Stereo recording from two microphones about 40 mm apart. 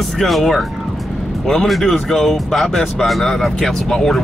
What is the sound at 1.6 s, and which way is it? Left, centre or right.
Speech, centre.